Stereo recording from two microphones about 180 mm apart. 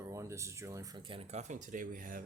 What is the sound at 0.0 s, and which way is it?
Speech, 15° right (ahead or behind).